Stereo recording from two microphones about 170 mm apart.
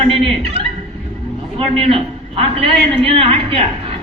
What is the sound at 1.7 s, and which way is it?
A woman's voice, 30° right (ahead or behind).